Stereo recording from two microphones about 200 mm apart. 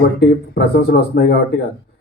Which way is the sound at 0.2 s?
50° left (ahead or behind).